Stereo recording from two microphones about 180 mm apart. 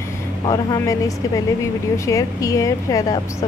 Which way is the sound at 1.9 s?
15° left (ahead or behind).